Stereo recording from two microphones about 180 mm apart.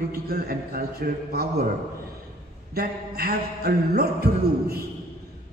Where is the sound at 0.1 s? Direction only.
55° right (ahead or behind).